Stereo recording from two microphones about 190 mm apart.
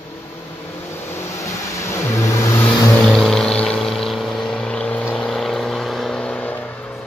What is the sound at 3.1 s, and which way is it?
Vehicle, 5° left (ahead or behind).